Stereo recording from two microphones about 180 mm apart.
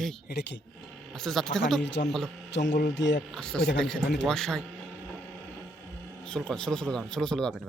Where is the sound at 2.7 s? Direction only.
50° left (ahead or behind).